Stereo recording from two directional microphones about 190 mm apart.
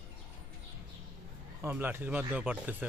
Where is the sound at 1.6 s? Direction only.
10° right (ahead or behind).